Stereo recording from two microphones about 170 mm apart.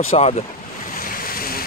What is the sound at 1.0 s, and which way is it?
Waves, 60° left (ahead or behind).